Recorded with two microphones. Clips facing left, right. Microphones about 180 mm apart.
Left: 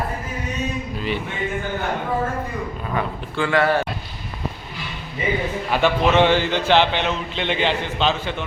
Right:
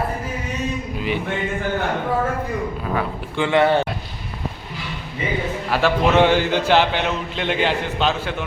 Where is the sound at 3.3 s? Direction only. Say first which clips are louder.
Right 2 dB; 20° right (ahead or behind).